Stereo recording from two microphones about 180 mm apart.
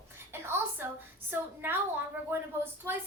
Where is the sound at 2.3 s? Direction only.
15° right (ahead or behind).